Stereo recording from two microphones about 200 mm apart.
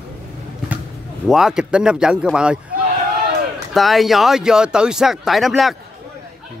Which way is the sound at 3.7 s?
Centre (ahead or behind).